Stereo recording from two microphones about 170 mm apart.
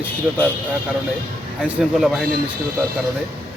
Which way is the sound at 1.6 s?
Centre (ahead or behind).